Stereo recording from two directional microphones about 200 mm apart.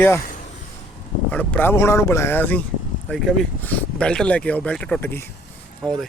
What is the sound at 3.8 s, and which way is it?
Speech, 5° left (ahead or behind).